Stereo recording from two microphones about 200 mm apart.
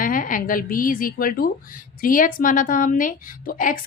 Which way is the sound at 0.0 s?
45° left (ahead or behind).